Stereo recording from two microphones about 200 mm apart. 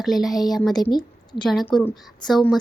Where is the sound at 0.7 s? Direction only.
20° left (ahead or behind).